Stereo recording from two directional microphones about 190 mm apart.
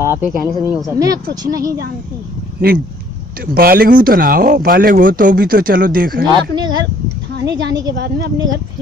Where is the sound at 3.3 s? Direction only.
50° right (ahead or behind).